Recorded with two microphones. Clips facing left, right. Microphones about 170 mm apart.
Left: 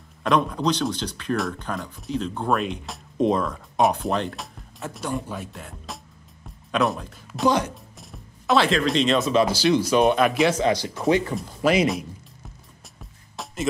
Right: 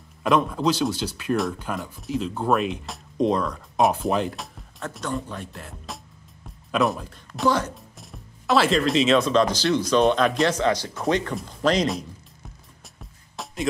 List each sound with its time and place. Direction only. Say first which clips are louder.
0.2 s speech: right 1 dB; centre (ahead or behind)
7.4 s speech: left 1 dB; 15° left (ahead or behind)
7.7 s speech: even; centre (ahead or behind)
13.0 s music: even; centre (ahead or behind)